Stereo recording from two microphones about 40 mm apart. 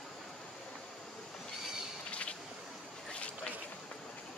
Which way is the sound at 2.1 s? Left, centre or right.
Left.